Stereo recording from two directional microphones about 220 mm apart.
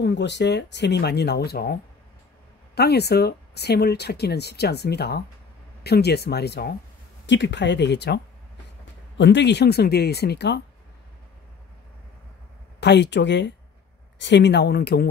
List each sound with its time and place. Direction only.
0.0 s speech: 50° left (ahead or behind)
9.2 s speech: 50° left (ahead or behind)
12.8 s speech: 50° left (ahead or behind)